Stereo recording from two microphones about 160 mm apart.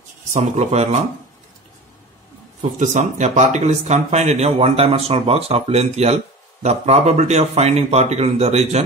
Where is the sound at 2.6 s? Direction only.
50° right (ahead or behind).